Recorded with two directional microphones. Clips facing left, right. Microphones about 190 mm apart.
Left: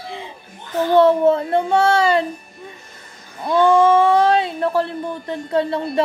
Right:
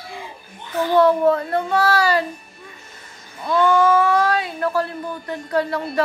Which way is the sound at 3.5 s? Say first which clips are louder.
Left 3 dB; 30° left (ahead or behind).